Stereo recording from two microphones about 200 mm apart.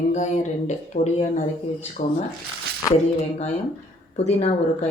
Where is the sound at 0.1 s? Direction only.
35° left (ahead or behind).